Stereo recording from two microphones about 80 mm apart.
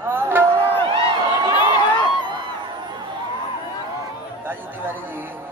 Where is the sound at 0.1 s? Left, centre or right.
Right.